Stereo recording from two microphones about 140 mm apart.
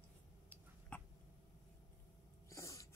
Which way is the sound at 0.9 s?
10° left (ahead or behind).